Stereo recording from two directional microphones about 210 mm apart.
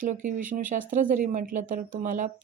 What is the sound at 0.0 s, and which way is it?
Speech, 35° right (ahead or behind).